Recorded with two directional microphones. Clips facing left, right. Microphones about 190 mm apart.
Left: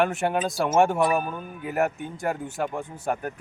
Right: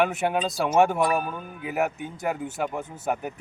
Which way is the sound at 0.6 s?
Centre (ahead or behind).